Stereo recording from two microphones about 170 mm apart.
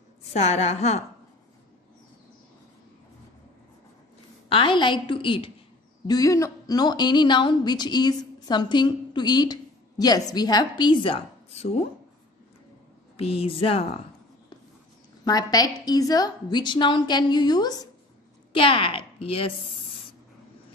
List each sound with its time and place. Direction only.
0.3 s a woman's voice: 40° left (ahead or behind)
4.5 s a woman's voice: 30° left (ahead or behind)
13.2 s a woman's voice: 35° left (ahead or behind)
15.2 s a woman's voice: 20° left (ahead or behind)